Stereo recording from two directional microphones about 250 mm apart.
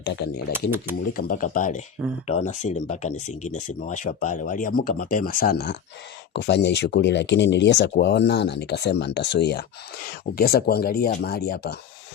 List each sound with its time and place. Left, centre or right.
0.0 s speech: left